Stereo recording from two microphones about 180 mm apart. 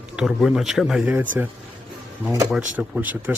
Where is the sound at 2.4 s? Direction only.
5° right (ahead or behind).